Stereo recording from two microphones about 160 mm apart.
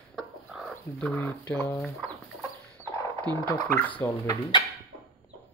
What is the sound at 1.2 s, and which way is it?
Speech, 10° left (ahead or behind).